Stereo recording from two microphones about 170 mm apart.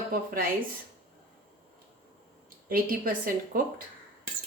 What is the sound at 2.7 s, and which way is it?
Speech, 55° right (ahead or behind).